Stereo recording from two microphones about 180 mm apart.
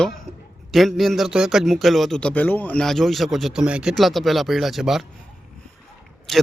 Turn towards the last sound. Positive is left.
turn(degrees=0)  # may be behind; listen again after turning